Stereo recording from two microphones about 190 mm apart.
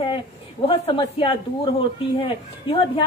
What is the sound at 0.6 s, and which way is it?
A woman's voice, 25° left (ahead or behind).